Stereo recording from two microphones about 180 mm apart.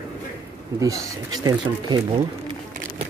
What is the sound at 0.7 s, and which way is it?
Speech, 20° right (ahead or behind).